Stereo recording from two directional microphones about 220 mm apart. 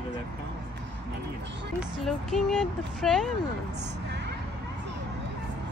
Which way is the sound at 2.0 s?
Centre (ahead or behind).